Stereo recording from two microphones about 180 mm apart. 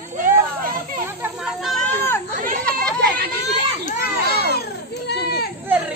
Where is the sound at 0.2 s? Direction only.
50° right (ahead or behind).